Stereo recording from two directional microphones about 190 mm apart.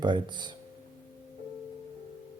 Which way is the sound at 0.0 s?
25° right (ahead or behind).